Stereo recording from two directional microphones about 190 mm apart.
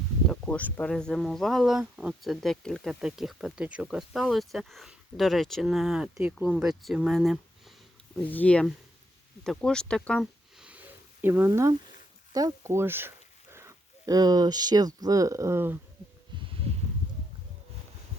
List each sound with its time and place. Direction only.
0.3 s speech: 5° left (ahead or behind); by 15.8 s 10° right (ahead or behind)